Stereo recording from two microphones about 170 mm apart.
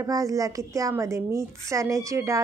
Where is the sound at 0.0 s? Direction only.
20° right (ahead or behind).